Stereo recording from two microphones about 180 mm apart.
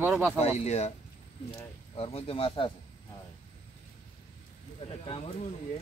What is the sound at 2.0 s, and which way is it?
Speech, 35° left (ahead or behind).